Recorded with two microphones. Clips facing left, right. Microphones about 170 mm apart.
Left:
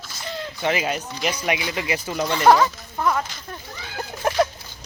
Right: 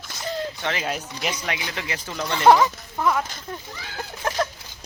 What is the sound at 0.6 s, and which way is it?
Speech, 10° left (ahead or behind).